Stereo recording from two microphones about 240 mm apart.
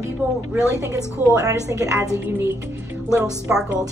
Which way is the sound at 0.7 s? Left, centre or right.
Centre.